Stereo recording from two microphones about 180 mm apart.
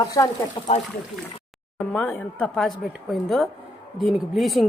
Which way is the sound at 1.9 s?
5° left (ahead or behind).